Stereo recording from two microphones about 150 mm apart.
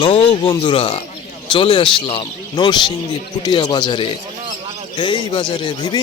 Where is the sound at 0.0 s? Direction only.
35° left (ahead or behind).